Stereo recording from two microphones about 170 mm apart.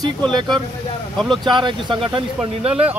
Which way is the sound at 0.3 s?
25° right (ahead or behind).